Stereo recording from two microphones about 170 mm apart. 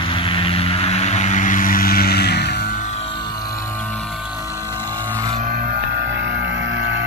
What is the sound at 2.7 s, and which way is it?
Music, 40° left (ahead or behind).